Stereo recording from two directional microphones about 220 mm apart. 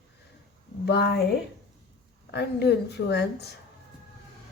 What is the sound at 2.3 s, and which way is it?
Speech, 50° left (ahead or behind).